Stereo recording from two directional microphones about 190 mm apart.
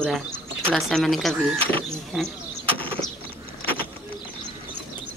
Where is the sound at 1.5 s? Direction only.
30° right (ahead or behind).